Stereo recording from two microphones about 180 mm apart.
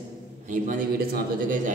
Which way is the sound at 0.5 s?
45° right (ahead or behind).